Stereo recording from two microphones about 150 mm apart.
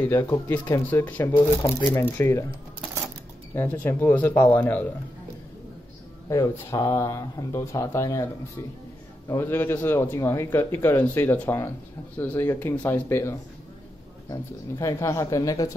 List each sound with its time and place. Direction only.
0.1 s speech: 20° left (ahead or behind)
0.8 s a man's voice: 10° left (ahead or behind)
3.5 s a man's voice: 15° left (ahead or behind)
6.2 s speech: 20° left (ahead or behind)
9.3 s a man's voice: 15° left (ahead or behind)